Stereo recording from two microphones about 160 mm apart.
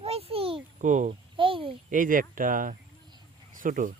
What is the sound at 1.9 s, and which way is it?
Speech, 55° right (ahead or behind).